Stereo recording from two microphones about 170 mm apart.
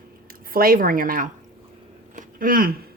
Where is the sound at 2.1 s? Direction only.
55° right (ahead or behind).